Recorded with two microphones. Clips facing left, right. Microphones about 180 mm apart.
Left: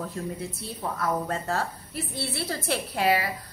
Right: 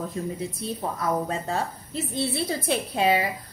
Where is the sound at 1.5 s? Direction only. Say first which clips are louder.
Right 1 dB; 20° right (ahead or behind).